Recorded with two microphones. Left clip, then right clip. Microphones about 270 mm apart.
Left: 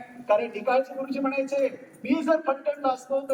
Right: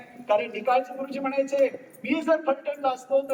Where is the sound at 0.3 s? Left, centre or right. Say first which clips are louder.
Even; centre.